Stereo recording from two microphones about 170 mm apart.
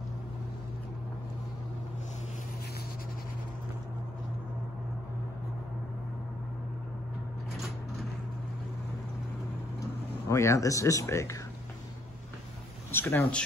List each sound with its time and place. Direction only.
10.2 s speech: 15° left (ahead or behind)
12.9 s speech: 10° left (ahead or behind)